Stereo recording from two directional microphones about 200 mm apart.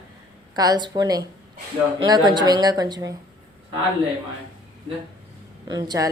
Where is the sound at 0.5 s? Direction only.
20° right (ahead or behind).